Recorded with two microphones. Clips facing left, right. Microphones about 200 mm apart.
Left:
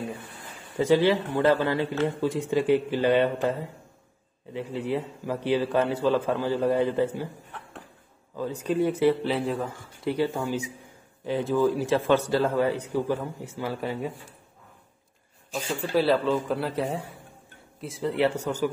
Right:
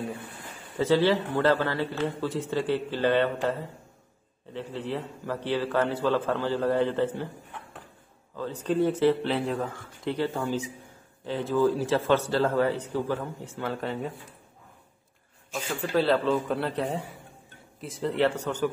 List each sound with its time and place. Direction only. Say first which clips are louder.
0.7 s a man's voice: left 2 dB; 15° left (ahead or behind)
8.4 s a man's voice: even; 10° left (ahead or behind)
9.3 s a man's voice: left 1 dB; centre (ahead or behind)
15.8 s a man's voice: left 1 dB; 10° left (ahead or behind)